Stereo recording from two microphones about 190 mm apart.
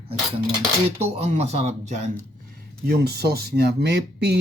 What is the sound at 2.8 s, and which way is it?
Speech, 55° right (ahead or behind).